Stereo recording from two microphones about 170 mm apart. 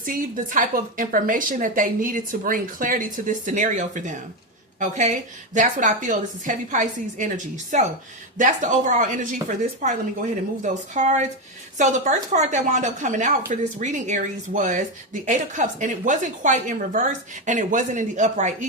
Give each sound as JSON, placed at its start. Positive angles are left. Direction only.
{"t": 0.0, "sound": "speech", "side_deg": -50}